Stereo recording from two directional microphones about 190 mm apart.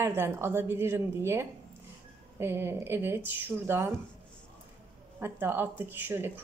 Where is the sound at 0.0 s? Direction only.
15° right (ahead or behind).